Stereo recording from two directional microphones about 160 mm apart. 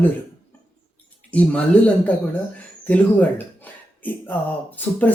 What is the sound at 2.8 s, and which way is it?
Speech, 10° left (ahead or behind).